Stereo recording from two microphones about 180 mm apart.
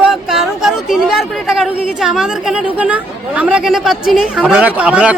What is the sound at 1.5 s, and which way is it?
Speech, centre (ahead or behind).